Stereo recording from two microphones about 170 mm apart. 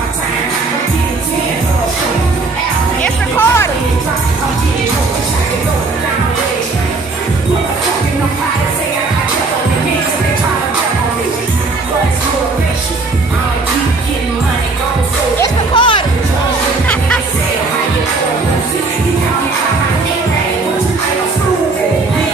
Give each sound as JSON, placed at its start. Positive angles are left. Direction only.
{"t": 3.0, "sound": "music", "side_deg": 10}
{"t": 15.7, "sound": "music", "side_deg": 30}